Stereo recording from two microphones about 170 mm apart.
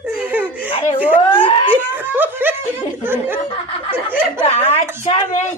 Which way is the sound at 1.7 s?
10° right (ahead or behind).